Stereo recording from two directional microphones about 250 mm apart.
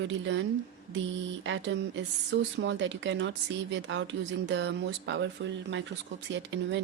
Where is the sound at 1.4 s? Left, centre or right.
Right.